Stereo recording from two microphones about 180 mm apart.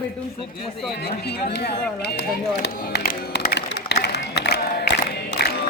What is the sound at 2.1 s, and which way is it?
Run, 70° left (ahead or behind).